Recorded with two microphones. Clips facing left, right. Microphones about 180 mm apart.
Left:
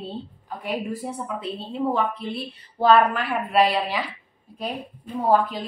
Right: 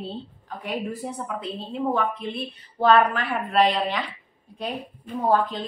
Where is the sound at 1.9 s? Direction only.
5° left (ahead or behind).